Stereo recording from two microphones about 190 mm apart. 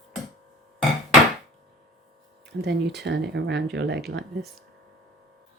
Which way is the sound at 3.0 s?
60° right (ahead or behind).